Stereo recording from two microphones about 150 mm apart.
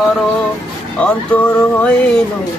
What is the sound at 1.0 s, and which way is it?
Music, 10° left (ahead or behind).